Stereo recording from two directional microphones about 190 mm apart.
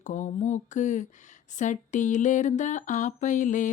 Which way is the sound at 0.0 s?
40° left (ahead or behind).